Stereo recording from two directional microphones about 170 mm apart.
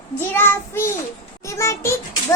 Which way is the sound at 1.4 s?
15° left (ahead or behind).